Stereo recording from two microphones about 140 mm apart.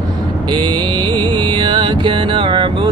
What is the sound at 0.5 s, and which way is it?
Music, 30° right (ahead or behind).